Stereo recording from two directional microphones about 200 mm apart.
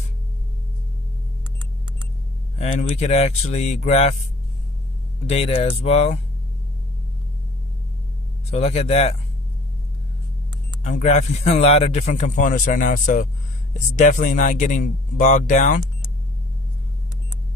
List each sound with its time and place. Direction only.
2.6 s a man's voice: 35° left (ahead or behind)
5.2 s a man's voice: 30° left (ahead or behind)
8.5 s a man's voice: 30° left (ahead or behind)
10.8 s a man's voice: 35° left (ahead or behind)